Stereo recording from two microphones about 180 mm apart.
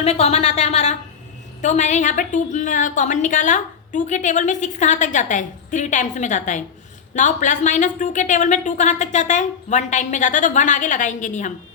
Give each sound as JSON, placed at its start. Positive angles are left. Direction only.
{"t": 0.0, "sound": "a woman's voice", "side_deg": 35}